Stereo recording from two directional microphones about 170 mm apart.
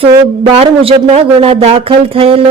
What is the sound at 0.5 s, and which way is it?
Speech, 35° right (ahead or behind).